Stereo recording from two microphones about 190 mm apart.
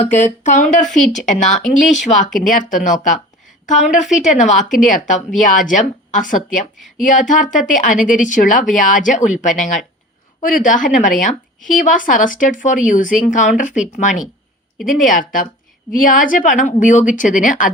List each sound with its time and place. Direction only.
0.0 s speech: 40° left (ahead or behind)